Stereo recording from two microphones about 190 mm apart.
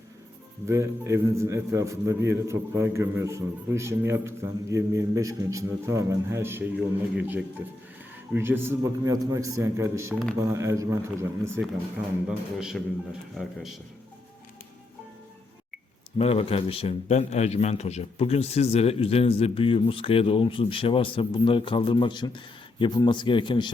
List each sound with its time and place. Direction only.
0.7 s a man's voice: 15° right (ahead or behind)
12.5 s a man's voice: 5° right (ahead or behind)
16.1 s a man's voice: 30° left (ahead or behind)